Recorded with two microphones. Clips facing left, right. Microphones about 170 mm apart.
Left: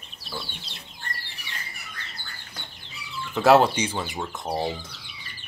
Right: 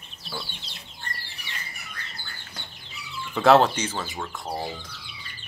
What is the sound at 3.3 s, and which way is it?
Speech, 10° left (ahead or behind).